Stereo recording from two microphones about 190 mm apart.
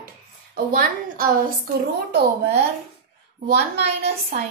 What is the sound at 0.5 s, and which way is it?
A woman's voice, 45° right (ahead or behind).